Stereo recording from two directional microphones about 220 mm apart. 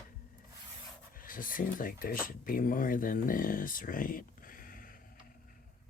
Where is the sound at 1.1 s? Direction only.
40° left (ahead or behind).